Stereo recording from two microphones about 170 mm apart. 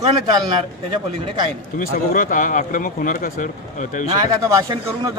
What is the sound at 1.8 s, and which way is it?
Speech, 50° left (ahead or behind).